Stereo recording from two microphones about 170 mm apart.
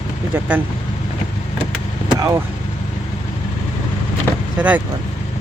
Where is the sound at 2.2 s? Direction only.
20° right (ahead or behind).